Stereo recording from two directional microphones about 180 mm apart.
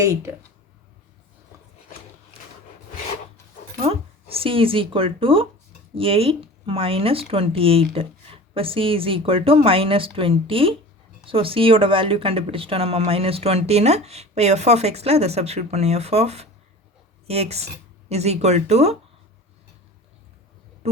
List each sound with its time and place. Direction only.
0.0 s speech: 15° right (ahead or behind)
3.8 s speech: 30° right (ahead or behind)
20.8 s a sound: 35° right (ahead or behind)